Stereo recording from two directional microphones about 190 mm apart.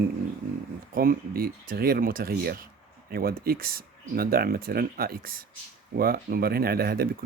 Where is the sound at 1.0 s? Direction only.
50° right (ahead or behind).